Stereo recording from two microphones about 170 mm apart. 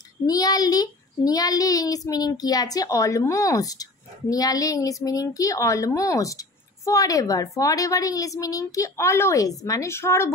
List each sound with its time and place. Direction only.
0.3 s a woman's voice: 20° left (ahead or behind)